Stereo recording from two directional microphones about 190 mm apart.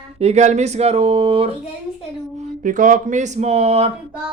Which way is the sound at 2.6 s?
45° right (ahead or behind).